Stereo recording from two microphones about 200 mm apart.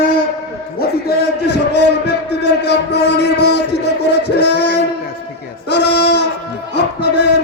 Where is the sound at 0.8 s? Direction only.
55° left (ahead or behind).